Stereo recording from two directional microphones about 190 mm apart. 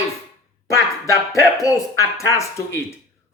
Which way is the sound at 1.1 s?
15° left (ahead or behind).